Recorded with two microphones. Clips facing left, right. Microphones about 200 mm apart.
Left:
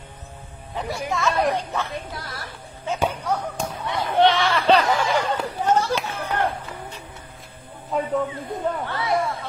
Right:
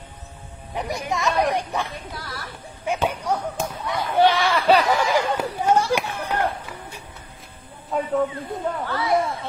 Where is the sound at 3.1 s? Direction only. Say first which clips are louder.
Right 1 dB; 15° right (ahead or behind).